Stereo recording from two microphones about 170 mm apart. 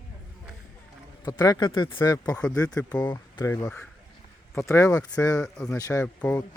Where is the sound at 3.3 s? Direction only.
20° left (ahead or behind).